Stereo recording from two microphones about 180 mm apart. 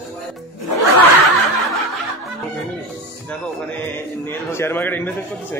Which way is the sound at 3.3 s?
10° left (ahead or behind).